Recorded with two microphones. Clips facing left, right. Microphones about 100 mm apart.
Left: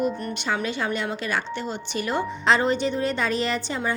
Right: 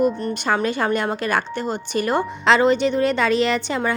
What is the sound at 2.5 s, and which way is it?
A woman's voice, 85° right.